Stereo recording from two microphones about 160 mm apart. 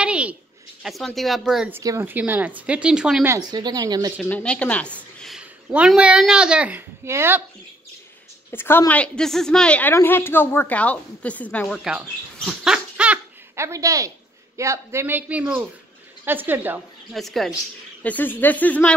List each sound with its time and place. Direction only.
0.0 s a sound: 5° right (ahead or behind)
0.8 s a woman's voice: centre (ahead or behind)
1.7 s speech: 20° right (ahead or behind)
3.3 s speech: 25° right (ahead or behind)
4.2 s a woman's voice: 5° left (ahead or behind); by 7.4 s 15° right (ahead or behind)
8.5 s a woman's voice: 15° left (ahead or behind); by 16.8 s 10° right (ahead or behind)
17.1 s a woman's voice: centre (ahead or behind)